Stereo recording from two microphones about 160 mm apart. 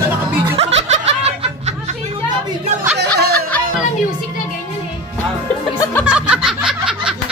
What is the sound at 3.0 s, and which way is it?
Snicker, 90° right.